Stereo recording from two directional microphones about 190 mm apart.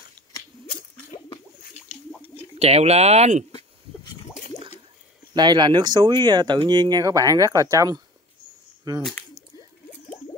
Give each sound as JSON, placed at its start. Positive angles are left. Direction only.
{"t": 2.6, "sound": "speech", "side_deg": -35}
{"t": 5.3, "sound": "speech", "side_deg": -20}